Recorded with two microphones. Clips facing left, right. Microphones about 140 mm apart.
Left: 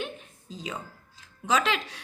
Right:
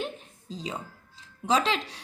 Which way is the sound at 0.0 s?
30° right (ahead or behind).